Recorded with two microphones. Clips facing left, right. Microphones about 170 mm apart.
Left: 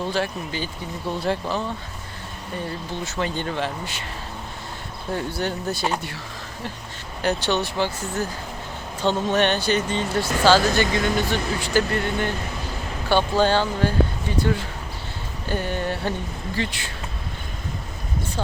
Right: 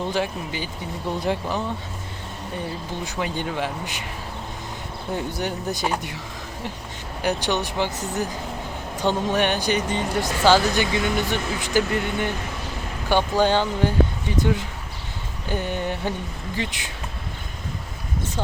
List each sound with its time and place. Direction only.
0.1 s speech: 15° right (ahead or behind)
3.0 s speech: 10° right (ahead or behind)
5.1 s speech: 15° right (ahead or behind)
7.2 s speech: 15° right (ahead or behind)